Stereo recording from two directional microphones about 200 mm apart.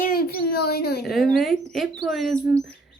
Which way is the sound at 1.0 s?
Centre (ahead or behind).